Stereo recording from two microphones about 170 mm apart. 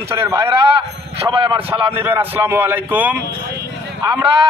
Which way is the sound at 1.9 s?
10° right (ahead or behind).